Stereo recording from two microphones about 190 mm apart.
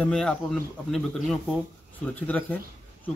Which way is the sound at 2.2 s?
10° left (ahead or behind).